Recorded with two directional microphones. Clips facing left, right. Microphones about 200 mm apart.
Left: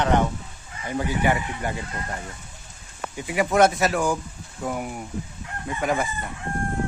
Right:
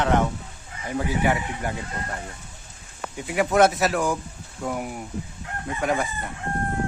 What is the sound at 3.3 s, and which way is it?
A man's voice, centre (ahead or behind).